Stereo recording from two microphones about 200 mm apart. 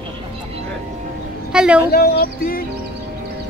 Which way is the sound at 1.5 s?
5° right (ahead or behind).